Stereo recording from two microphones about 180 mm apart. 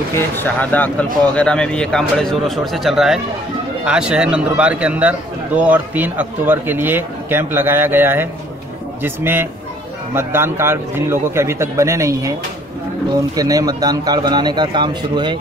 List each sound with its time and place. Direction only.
0.1 s a man's voice: 10° left (ahead or behind); by 12.4 s 15° right (ahead or behind)
13.4 s speech: 20° right (ahead or behind)